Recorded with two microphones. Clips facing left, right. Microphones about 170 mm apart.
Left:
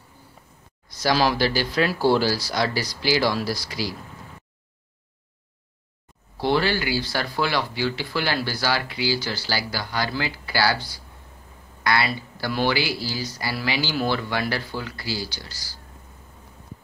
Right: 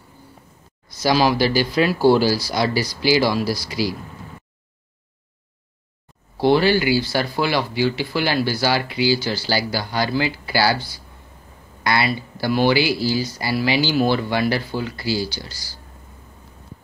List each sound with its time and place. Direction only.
1.0 s speech: 5° right (ahead or behind)
6.4 s speech: 15° right (ahead or behind)
11.8 s speech: 15° right (ahead or behind)